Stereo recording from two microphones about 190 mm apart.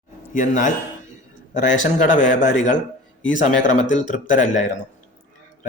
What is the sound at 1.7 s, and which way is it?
Speech, 40° left (ahead or behind).